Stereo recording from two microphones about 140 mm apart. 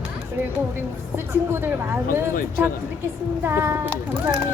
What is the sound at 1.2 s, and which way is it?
Speech, 15° right (ahead or behind).